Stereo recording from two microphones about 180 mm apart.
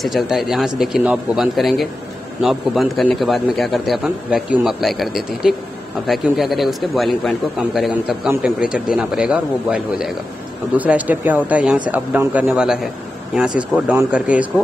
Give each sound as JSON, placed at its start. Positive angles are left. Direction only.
{"t": 0.0, "sound": "a man's voice", "side_deg": 0}